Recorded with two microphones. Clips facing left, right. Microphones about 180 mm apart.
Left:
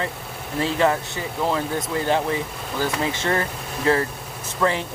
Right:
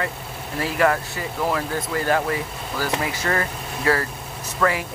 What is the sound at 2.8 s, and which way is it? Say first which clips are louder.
Speech: left 1 dB; 25° left (ahead or behind).